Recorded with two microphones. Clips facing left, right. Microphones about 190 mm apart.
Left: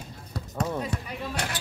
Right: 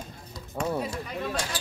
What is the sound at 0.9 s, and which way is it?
Speech, 60° left (ahead or behind).